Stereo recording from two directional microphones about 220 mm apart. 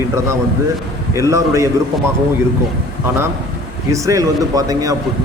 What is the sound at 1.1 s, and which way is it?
Speech, 15° right (ahead or behind).